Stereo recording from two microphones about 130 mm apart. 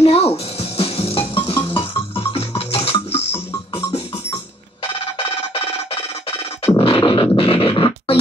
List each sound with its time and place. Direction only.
0.0 s music: 50° left (ahead or behind)
4.9 s music: 45° left (ahead or behind)